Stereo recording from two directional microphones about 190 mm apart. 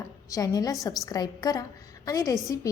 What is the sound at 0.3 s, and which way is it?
A woman's voice, 20° left (ahead or behind).